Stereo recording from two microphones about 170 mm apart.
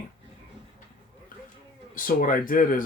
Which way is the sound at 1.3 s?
55° left (ahead or behind).